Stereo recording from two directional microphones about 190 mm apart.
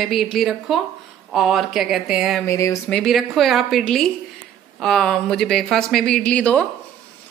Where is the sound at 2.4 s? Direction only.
15° left (ahead or behind).